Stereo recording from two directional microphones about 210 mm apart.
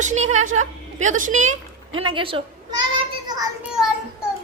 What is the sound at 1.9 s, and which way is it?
Speech, 25° right (ahead or behind).